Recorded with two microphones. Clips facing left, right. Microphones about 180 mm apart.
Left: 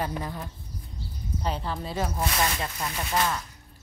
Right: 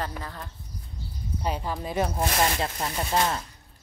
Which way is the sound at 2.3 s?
30° right (ahead or behind).